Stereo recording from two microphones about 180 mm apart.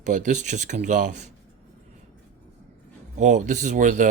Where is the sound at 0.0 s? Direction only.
40° right (ahead or behind).